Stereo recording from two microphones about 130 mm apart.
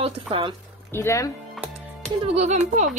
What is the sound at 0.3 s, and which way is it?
Speech, 45° right (ahead or behind).